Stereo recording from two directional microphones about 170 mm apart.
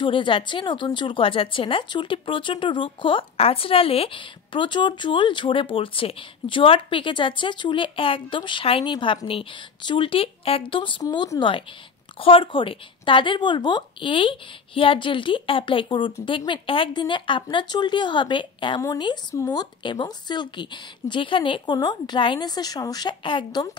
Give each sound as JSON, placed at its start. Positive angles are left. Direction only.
{"t": 0.0, "sound": "speech", "side_deg": 30}